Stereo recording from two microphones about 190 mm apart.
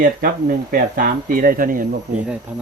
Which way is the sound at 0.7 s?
50° right (ahead or behind).